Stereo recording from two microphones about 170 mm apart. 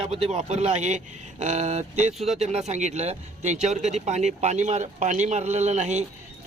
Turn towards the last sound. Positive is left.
turn(degrees=-45)  # may be behind; listen again after turning